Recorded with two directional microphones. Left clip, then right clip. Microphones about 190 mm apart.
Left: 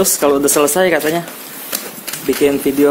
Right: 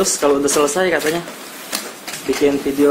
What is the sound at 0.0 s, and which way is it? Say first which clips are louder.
Speech: left 2 dB; 50° left (ahead or behind).